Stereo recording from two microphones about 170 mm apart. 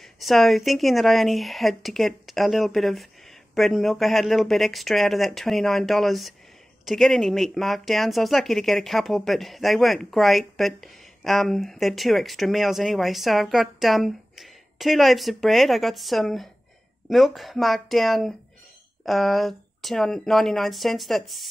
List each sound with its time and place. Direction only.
0.0 s speech: centre (ahead or behind)